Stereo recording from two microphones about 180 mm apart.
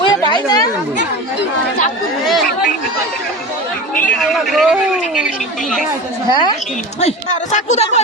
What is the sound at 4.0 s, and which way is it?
A man's voice, centre (ahead or behind).